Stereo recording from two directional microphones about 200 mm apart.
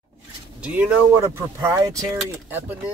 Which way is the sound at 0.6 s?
5° right (ahead or behind).